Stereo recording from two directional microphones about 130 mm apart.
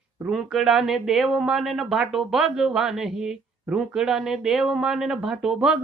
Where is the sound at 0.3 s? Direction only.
Centre (ahead or behind).